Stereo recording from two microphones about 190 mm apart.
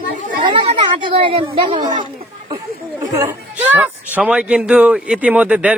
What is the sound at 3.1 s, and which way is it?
Speech, 15° right (ahead or behind).